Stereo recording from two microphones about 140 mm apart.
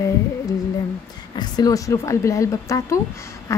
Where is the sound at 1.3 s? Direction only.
30° left (ahead or behind).